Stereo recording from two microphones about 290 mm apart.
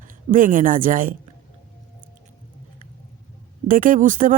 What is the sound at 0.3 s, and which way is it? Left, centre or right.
Speech, right.